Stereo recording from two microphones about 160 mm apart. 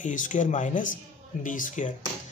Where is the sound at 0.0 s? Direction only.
50° left (ahead or behind).